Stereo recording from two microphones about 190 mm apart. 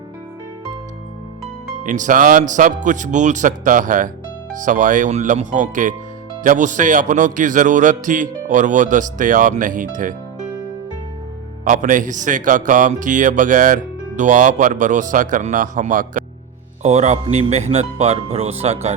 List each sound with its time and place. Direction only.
1.8 s a man's voice: 40° right (ahead or behind)
11.6 s a man's voice: 45° right (ahead or behind)